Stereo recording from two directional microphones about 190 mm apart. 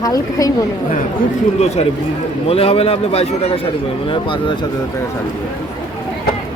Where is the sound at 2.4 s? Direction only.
30° left (ahead or behind).